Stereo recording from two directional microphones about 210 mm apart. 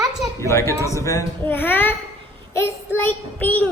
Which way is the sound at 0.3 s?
15° left (ahead or behind).